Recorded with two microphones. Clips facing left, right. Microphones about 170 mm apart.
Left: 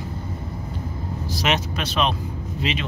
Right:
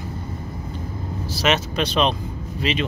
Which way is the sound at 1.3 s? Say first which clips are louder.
Right 3 dB; 15° left (ahead or behind).